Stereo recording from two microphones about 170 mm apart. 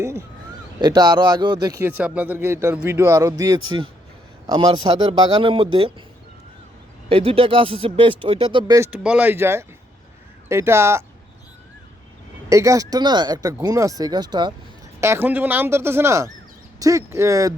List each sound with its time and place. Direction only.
0.8 s speech: 25° right (ahead or behind)
1.8 s a man's voice: 10° right (ahead or behind); by 5.9 s 30° right (ahead or behind)
7.1 s speech: 35° right (ahead or behind)
8.9 s a man's voice: 10° right (ahead or behind)
12.5 s speech: 20° right (ahead or behind)
15.0 s a man's voice: 15° right (ahead or behind)